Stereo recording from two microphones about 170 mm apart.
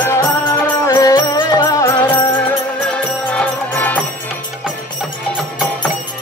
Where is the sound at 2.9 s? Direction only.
10° left (ahead or behind).